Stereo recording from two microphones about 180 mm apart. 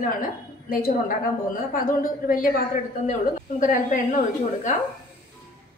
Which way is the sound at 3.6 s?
45° left (ahead or behind).